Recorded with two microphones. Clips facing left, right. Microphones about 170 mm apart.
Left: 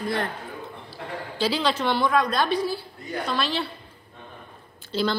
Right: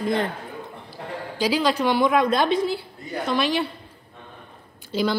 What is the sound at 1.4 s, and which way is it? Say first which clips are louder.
A woman's voice: right 3 dB; 10° right (ahead or behind).